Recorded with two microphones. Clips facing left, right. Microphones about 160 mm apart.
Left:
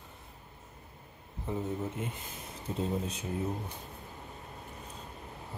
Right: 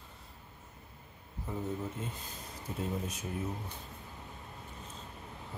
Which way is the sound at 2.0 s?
20° left (ahead or behind).